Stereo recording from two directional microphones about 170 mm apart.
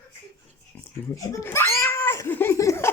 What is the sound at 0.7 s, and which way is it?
Cat, 15° left (ahead or behind).